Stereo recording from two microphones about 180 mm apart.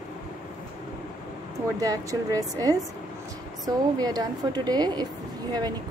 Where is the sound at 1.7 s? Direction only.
20° right (ahead or behind).